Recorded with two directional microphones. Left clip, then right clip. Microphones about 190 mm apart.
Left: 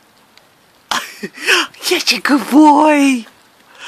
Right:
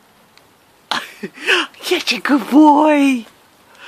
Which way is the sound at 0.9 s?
10° left (ahead or behind).